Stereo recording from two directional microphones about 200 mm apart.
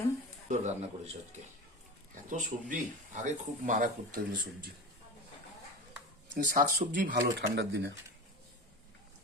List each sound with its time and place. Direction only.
0.4 s a sound: 35° right (ahead or behind)
2.3 s speech: 40° right (ahead or behind)
6.3 s speech: 40° right (ahead or behind); by 7.9 s 55° right (ahead or behind)